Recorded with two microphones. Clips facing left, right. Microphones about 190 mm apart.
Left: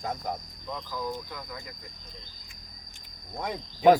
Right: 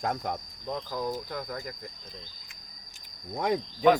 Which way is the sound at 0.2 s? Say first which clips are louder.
Right 1 dB; 70° right (ahead or behind).